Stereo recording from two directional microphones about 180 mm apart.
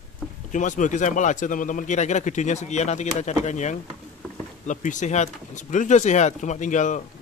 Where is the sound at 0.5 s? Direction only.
45° left (ahead or behind).